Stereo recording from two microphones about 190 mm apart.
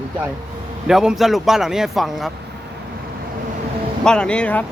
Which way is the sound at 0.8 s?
5° right (ahead or behind).